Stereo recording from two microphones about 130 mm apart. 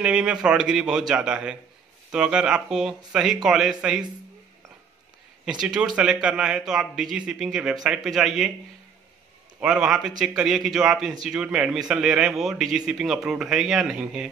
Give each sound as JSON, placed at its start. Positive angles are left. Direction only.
{"t": 0.0, "sound": "a man's voice", "side_deg": -5}
{"t": 5.4, "sound": "speech", "side_deg": -5}
{"t": 9.6, "sound": "speech", "side_deg": -5}